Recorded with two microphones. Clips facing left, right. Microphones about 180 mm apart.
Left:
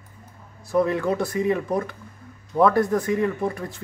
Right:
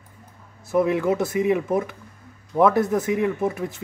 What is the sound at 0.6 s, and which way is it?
Speech, 20° right (ahead or behind).